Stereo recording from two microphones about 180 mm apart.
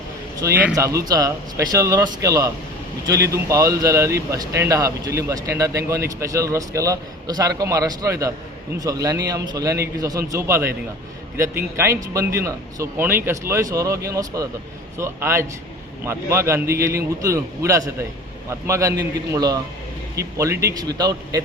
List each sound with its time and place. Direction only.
0.4 s a man's voice: 15° right (ahead or behind)